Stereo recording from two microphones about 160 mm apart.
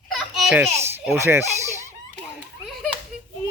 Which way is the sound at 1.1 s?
15° right (ahead or behind).